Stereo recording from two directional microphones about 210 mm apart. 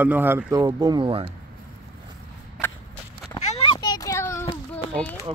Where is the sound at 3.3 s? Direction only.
25° left (ahead or behind); by 5.1 s 5° left (ahead or behind).